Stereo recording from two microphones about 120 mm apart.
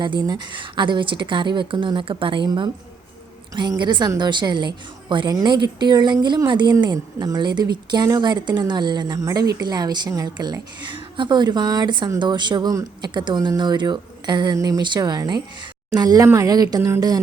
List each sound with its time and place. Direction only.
0.2 s speech: 40° right (ahead or behind)